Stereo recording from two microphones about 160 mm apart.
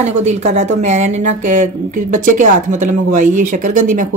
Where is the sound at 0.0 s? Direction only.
45° right (ahead or behind).